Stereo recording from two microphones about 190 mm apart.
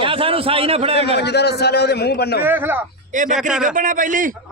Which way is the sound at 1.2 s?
60° left (ahead or behind).